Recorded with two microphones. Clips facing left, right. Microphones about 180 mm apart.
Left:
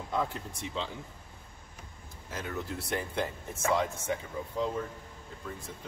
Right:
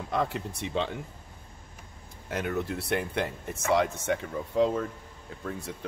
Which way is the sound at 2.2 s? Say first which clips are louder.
Right 7 dB; 65° right (ahead or behind).